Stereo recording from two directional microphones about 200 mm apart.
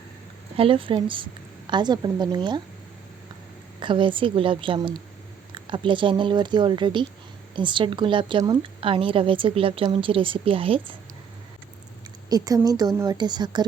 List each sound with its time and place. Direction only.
0.5 s a woman's voice: 25° right (ahead or behind)
3.8 s a woman's voice: 25° right (ahead or behind)
12.3 s a woman's voice: 20° right (ahead or behind)